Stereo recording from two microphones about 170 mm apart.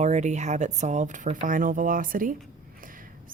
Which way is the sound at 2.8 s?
55° right (ahead or behind).